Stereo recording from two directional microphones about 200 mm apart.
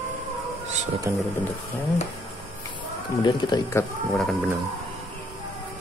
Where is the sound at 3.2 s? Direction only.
20° left (ahead or behind).